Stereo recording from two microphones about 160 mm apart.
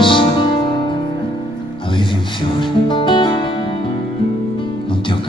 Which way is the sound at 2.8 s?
30° left (ahead or behind).